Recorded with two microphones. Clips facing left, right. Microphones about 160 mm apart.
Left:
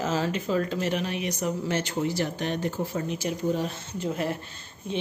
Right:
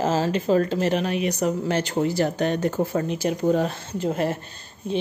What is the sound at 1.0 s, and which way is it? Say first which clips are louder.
Speech: right 6 dB; 65° right (ahead or behind).